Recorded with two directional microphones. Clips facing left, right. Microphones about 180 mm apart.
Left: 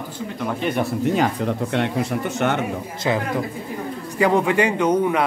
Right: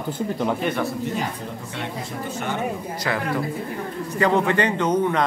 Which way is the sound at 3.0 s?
20° left (ahead or behind).